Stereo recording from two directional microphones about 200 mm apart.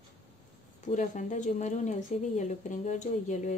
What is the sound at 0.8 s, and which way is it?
Speech, 35° left (ahead or behind).